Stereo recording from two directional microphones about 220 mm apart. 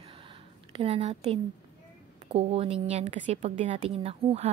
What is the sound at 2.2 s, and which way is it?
A woman's voice, 30° right (ahead or behind).